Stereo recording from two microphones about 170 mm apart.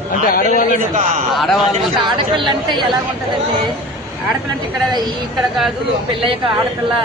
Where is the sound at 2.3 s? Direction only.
25° right (ahead or behind).